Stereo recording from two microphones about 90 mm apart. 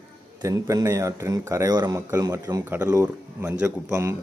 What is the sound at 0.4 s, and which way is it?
Speech, 40° right (ahead or behind).